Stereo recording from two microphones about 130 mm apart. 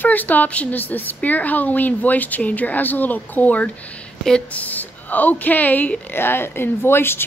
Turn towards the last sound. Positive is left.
turn(degrees=15)  # may be behind; listen again after turning